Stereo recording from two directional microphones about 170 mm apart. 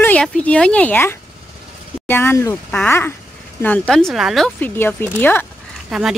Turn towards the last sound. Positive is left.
turn(degrees=0)  # may be behind; listen again after turning